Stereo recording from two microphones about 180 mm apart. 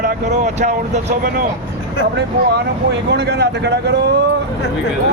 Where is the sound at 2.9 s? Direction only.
70° right (ahead or behind).